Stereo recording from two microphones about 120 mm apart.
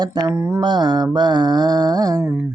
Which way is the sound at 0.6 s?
35° right (ahead or behind).